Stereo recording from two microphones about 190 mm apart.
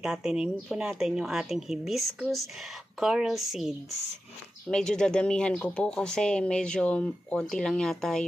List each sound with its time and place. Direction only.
0.0 s speech: 5° right (ahead or behind)